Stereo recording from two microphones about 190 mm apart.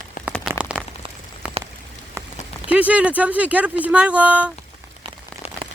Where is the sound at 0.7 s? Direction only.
5° left (ahead or behind).